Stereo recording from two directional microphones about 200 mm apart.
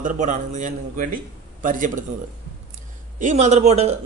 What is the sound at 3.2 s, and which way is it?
Speech, 35° right (ahead or behind).